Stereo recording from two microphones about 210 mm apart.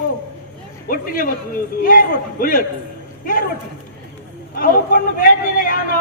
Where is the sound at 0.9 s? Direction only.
40° left (ahead or behind).